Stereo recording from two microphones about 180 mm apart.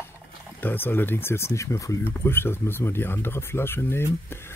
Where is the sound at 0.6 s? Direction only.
10° left (ahead or behind).